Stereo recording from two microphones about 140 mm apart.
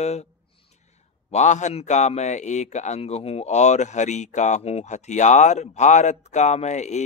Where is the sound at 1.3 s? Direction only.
55° left (ahead or behind).